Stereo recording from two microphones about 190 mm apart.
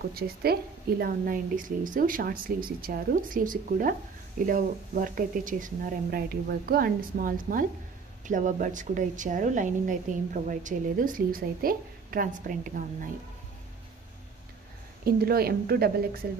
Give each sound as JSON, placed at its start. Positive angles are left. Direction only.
{"t": 0.1, "sound": "a woman's voice", "side_deg": -55}
{"t": 15.0, "sound": "a woman's voice", "side_deg": -55}